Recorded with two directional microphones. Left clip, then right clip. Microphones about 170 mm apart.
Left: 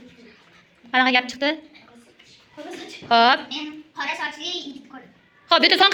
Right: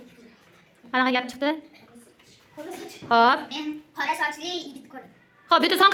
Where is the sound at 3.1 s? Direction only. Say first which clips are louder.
Left 2 dB; 10° right (ahead or behind).